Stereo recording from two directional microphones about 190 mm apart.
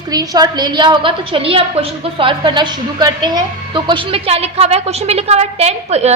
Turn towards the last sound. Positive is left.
turn(degrees=-35)  # may be behind; listen again after turning